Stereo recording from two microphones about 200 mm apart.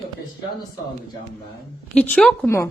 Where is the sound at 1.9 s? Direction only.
5° left (ahead or behind).